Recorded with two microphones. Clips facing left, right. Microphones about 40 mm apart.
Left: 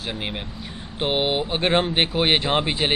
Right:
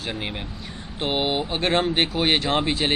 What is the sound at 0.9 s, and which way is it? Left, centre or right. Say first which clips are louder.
Speech: left 2 dB; left.